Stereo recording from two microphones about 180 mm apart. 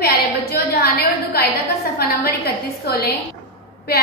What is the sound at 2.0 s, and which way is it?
A woman's voice, 60° left (ahead or behind).